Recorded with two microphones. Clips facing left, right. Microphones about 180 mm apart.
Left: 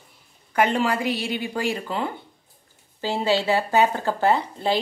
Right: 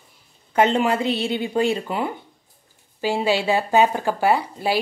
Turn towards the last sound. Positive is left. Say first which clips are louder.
# right 1 dB
turn(degrees=-10)  # may be behind; listen again after turning